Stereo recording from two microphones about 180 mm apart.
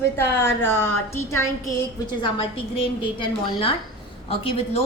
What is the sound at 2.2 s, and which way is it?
A woman's voice, 30° left (ahead or behind).